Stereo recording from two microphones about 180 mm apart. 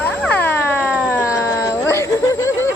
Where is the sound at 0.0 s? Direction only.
10° left (ahead or behind).